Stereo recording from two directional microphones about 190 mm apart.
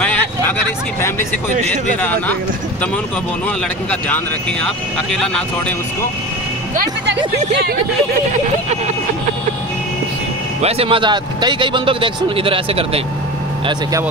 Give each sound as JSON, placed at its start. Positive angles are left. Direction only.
{"t": 0.0, "sound": "vehicle", "side_deg": 10}
{"t": 2.0, "sound": "speech", "side_deg": 10}
{"t": 8.3, "sound": "speech", "side_deg": -35}
{"t": 10.6, "sound": "speech", "side_deg": -30}